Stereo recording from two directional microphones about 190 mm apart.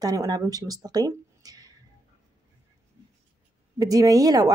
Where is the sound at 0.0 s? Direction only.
20° right (ahead or behind).